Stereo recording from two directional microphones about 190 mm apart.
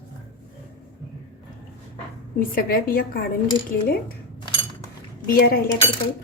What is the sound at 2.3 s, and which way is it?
Speech, 50° left (ahead or behind).